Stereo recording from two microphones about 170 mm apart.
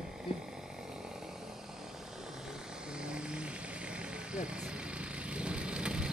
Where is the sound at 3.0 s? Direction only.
5° right (ahead or behind).